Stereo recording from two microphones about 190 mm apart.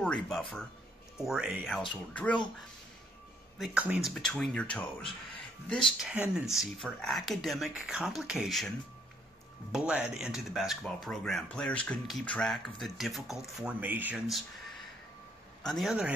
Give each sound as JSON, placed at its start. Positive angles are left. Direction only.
{"t": 0.0, "sound": "speech", "side_deg": 5}
{"t": 3.5, "sound": "speech", "side_deg": -5}
{"t": 15.6, "sound": "speech", "side_deg": 0}